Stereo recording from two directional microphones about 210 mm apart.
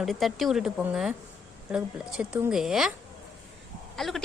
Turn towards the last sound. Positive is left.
turn(degrees=0)  # may be behind; listen again after turning